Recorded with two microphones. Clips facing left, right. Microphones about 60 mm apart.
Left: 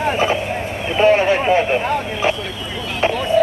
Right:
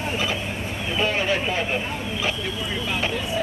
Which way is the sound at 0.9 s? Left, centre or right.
Left.